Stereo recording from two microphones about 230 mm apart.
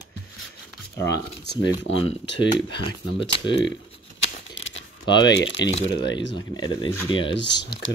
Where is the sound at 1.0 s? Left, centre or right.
Left.